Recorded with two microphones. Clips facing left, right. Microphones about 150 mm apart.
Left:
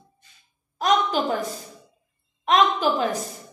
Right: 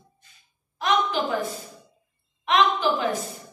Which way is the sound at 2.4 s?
40° left (ahead or behind).